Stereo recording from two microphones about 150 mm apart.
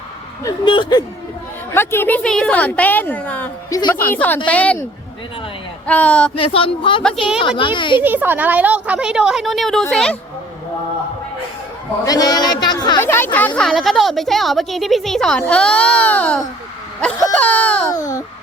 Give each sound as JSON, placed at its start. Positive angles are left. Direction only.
{"t": 0.4, "sound": "speech", "side_deg": 30}
{"t": 1.7, "sound": "a woman's voice", "side_deg": 15}
{"t": 3.7, "sound": "a woman's voice", "side_deg": 30}
{"t": 4.1, "sound": "a woman's voice", "side_deg": 10}
{"t": 5.8, "sound": "a woman's voice", "side_deg": 10}
{"t": 6.3, "sound": "speech", "side_deg": 35}
{"t": 8.0, "sound": "a woman's voice", "side_deg": -10}
{"t": 12.0, "sound": "speech", "side_deg": 25}
{"t": 13.0, "sound": "a woman's voice", "side_deg": 15}